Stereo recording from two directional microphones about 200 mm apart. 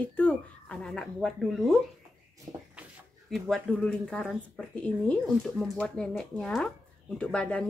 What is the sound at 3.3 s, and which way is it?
Speech, centre (ahead or behind).